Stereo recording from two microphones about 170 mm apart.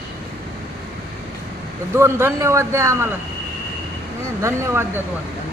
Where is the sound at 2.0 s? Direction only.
15° right (ahead or behind).